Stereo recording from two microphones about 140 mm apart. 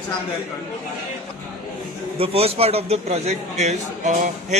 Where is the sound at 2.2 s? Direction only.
45° right (ahead or behind).